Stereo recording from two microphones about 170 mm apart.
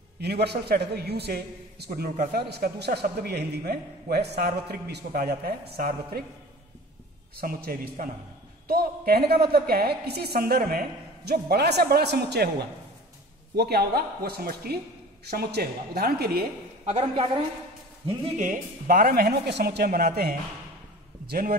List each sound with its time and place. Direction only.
0.2 s a man's voice: 75° right (ahead or behind)
7.3 s a man's voice: 60° right (ahead or behind)
13.6 s a man's voice: 70° right (ahead or behind)
16.8 s a woman's voice: 35° right (ahead or behind)
18.4 s speech: 50° right (ahead or behind); by 20.1 s 65° right (ahead or behind)
21.3 s speech: 60° right (ahead or behind)